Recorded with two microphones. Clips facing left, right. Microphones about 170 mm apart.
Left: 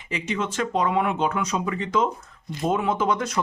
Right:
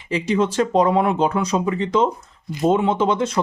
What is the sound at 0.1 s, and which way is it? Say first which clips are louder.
Speech: right 8 dB; 35° right (ahead or behind).